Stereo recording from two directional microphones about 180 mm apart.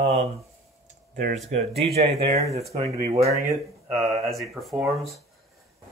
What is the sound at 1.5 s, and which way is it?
Speech, 35° right (ahead or behind).